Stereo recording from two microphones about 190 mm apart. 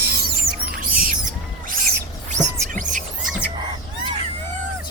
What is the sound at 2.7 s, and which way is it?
Music, 40° right (ahead or behind).